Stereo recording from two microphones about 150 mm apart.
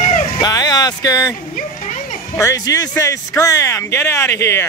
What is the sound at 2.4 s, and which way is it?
Speech, 20° left (ahead or behind).